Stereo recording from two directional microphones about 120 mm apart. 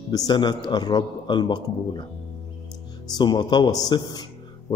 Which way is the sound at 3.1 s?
35° left (ahead or behind).